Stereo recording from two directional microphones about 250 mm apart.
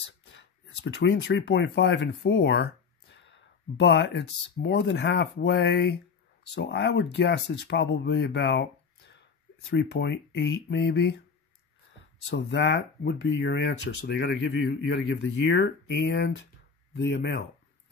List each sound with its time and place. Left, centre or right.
0.0 s speech: left
9.7 s speech: left
12.4 s speech: left